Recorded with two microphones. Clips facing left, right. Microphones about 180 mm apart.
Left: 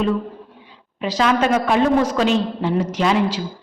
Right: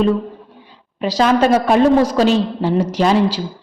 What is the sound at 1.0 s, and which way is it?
A man's voice, 35° right (ahead or behind).